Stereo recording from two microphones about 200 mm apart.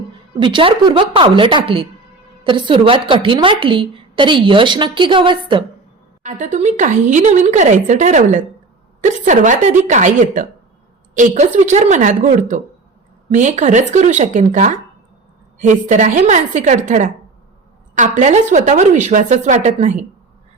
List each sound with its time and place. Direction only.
0.3 s a woman's voice: 25° right (ahead or behind)
6.4 s a woman's voice: 40° right (ahead or behind)